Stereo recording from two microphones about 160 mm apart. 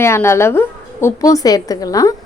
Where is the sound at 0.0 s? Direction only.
15° left (ahead or behind).